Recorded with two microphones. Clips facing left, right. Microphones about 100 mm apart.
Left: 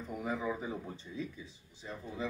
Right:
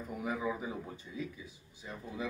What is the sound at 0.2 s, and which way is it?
A man's voice, 10° right (ahead or behind).